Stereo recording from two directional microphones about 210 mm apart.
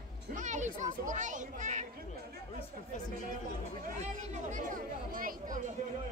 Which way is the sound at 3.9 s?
30° right (ahead or behind).